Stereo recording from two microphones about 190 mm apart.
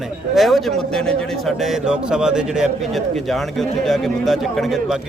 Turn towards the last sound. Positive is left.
turn(degrees=0)  # may be behind; listen again after turning